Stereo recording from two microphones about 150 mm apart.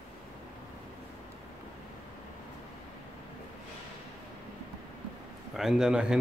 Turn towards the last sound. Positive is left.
turn(degrees=-5)  # may be behind; listen again after turning